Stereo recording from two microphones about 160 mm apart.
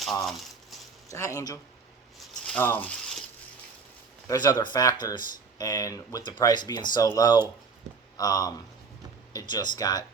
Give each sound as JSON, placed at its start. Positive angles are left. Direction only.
{"t": 1.1, "sound": "speech", "side_deg": 20}
{"t": 2.5, "sound": "a sound", "side_deg": 10}
{"t": 4.3, "sound": "speech", "side_deg": 25}